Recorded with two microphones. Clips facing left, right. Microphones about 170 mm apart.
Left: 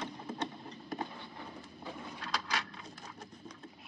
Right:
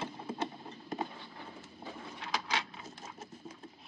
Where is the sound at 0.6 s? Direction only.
25° right (ahead or behind).